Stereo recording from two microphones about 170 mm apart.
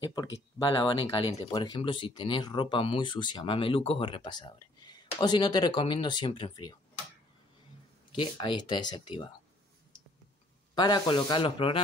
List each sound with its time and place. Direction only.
0.0 s speech: 25° left (ahead or behind)
8.1 s speech: 30° left (ahead or behind)
10.7 s speech: 25° left (ahead or behind)